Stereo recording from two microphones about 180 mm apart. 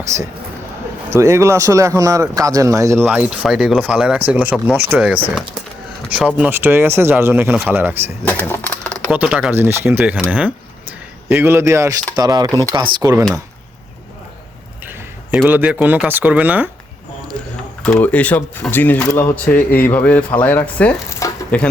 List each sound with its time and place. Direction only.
0.1 s speech: 15° right (ahead or behind)
8.2 s a sound: 10° left (ahead or behind)
9.0 s speech: 5° right (ahead or behind)
14.8 s speech: 5° right (ahead or behind)
17.8 s speech: 10° left (ahead or behind)